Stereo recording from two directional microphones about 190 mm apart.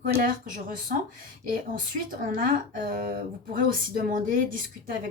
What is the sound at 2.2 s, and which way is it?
A woman's voice, 45° right (ahead or behind).